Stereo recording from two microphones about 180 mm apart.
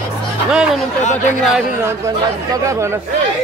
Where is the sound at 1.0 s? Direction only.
40° left (ahead or behind).